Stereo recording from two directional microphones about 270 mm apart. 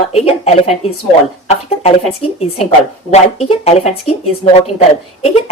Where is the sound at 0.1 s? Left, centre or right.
Left.